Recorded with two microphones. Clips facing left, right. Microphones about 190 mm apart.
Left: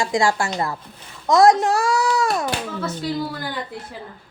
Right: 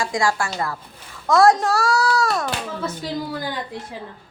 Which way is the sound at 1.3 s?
15° left (ahead or behind).